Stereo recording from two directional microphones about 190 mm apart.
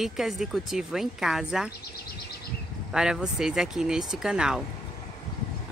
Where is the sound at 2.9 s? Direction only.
5° right (ahead or behind).